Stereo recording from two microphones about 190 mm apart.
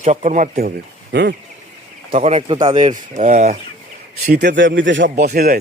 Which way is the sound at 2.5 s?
25° right (ahead or behind).